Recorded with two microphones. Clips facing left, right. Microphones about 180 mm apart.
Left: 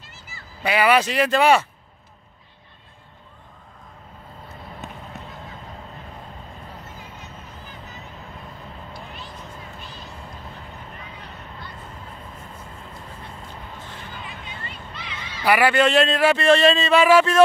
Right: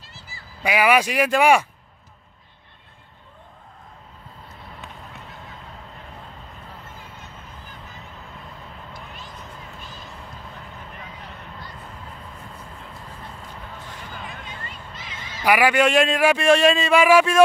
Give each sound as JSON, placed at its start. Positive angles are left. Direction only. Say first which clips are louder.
{"t": 0.6, "sound": "speech", "louder": "even", "side_deg": -10}
{"t": 4.8, "sound": "run", "louder": "left 5 dB", "side_deg": 45}
{"t": 8.9, "sound": "vehicle", "louder": "left 2 dB", "side_deg": -45}
{"t": 14.2, "sound": "a sound", "louder": "even", "side_deg": -45}
{"t": 15.4, "sound": "speech", "louder": "even", "side_deg": -10}